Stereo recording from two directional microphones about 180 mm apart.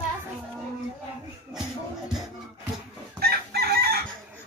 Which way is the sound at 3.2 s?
60° right (ahead or behind).